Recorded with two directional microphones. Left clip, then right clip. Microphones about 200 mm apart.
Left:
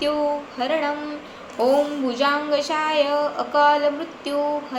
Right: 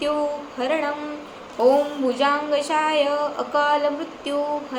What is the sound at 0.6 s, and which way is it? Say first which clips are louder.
Speech: even; 10° right (ahead or behind).